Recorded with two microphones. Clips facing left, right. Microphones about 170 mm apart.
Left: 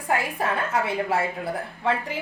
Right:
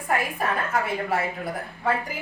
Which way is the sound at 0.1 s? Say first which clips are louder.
Left 1 dB; 25° left (ahead or behind).